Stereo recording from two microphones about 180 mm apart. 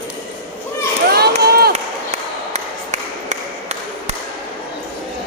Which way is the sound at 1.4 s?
60° right (ahead or behind).